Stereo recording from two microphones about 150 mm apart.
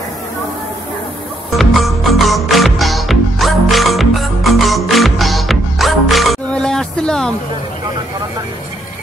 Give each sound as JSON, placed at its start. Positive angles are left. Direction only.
{"t": 1.6, "sound": "music", "side_deg": 0}